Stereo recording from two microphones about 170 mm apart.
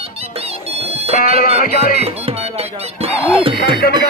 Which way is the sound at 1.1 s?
50° left (ahead or behind).